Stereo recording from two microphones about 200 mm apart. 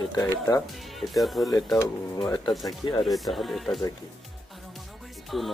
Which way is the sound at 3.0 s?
Centre (ahead or behind).